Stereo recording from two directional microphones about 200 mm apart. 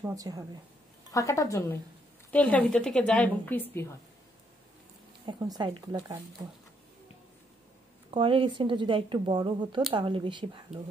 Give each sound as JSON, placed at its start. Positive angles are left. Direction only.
{"t": 0.0, "sound": "a woman's voice", "side_deg": -15}
{"t": 1.1, "sound": "a woman's voice", "side_deg": 15}
{"t": 5.2, "sound": "speech", "side_deg": -20}
{"t": 8.1, "sound": "speech", "side_deg": -25}